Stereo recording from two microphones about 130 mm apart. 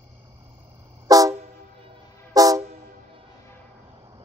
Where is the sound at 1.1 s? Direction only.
25° right (ahead or behind).